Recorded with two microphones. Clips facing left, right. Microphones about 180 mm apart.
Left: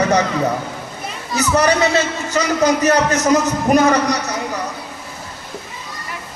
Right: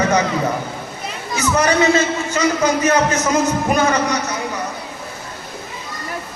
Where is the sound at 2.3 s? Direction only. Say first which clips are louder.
Left 2 dB; 40° left (ahead or behind).